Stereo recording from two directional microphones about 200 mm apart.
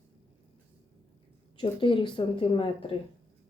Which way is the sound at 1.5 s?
25° left (ahead or behind).